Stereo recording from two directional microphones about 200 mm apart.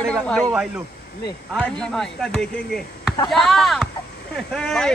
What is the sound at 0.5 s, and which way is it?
Speech, 10° right (ahead or behind).